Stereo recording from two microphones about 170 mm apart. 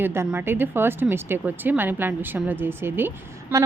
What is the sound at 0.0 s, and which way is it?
Speech, 15° right (ahead or behind).